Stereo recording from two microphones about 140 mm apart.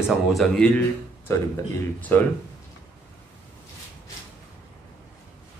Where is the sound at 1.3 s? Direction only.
20° left (ahead or behind).